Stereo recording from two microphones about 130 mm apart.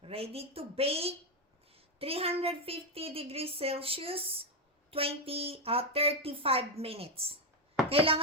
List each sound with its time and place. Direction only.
0.0 s a woman's voice: 50° right (ahead or behind)